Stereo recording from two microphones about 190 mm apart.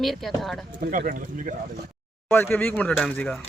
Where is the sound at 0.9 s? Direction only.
45° right (ahead or behind).